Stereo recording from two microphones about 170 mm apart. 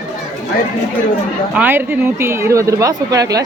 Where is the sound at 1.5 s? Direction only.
10° right (ahead or behind).